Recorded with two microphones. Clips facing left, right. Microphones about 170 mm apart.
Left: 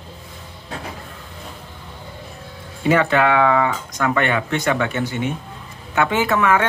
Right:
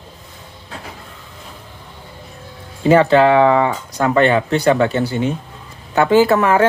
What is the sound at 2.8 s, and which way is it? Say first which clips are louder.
Speech: right 6 dB; 30° right (ahead or behind).